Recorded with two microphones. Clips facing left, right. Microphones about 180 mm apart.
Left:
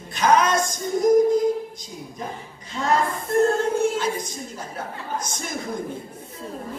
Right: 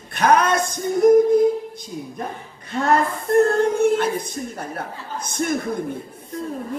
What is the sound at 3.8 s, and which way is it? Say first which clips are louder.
A woman's voice: right 4 dB; 60° right (ahead or behind).